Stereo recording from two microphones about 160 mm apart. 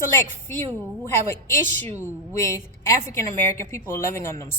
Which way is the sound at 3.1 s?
15° left (ahead or behind).